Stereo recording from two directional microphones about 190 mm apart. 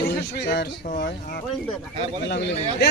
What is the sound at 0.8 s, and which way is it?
Speech, 40° left (ahead or behind).